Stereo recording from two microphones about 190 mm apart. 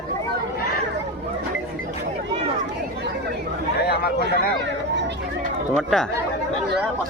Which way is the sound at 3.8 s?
60° left (ahead or behind).